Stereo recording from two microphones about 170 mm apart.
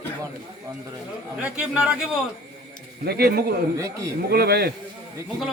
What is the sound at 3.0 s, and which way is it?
A man's voice, 70° right (ahead or behind).